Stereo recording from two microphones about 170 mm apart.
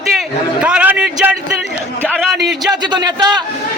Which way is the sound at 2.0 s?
10° left (ahead or behind).